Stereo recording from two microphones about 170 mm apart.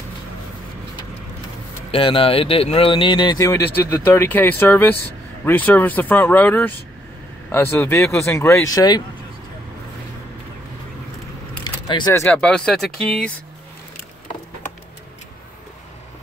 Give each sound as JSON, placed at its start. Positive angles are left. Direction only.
{"t": 1.9, "sound": "speech", "side_deg": 30}
{"t": 11.6, "sound": "speech", "side_deg": 25}